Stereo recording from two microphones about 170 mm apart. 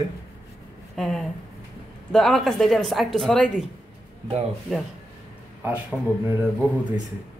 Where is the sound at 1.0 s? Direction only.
5° left (ahead or behind).